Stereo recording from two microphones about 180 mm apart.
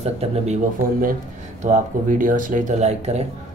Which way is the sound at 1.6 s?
40° right (ahead or behind).